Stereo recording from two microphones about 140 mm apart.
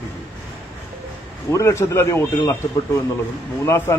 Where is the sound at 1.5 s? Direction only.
20° left (ahead or behind).